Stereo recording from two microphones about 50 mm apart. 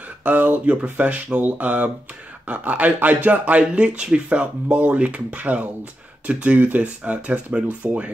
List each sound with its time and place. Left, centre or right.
0.2 s speech: right